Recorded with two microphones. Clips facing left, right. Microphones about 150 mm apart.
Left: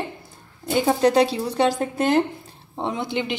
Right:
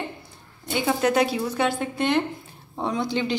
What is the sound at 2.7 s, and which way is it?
Speech, 20° left (ahead or behind).